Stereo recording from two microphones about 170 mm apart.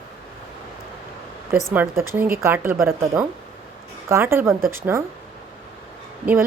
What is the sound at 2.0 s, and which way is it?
Speech, 15° right (ahead or behind).